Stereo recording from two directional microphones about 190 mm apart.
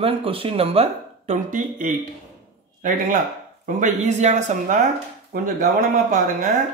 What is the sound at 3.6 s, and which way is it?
Speech, 40° right (ahead or behind).